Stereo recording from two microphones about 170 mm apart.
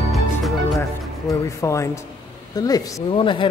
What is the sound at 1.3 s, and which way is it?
A man's voice, 20° left (ahead or behind).